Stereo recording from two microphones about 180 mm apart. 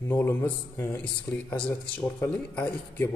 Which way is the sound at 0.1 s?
15° left (ahead or behind).